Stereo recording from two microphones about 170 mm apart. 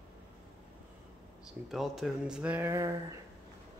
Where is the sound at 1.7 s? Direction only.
Centre (ahead or behind).